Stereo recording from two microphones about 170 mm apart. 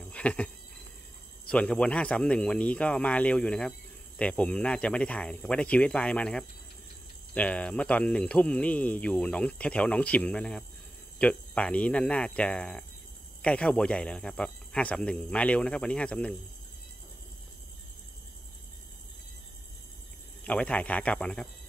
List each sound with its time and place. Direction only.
0.0 s cricket: 5° left (ahead or behind)
1.5 s speech: 5° left (ahead or behind)
20.4 s speech: 10° left (ahead or behind)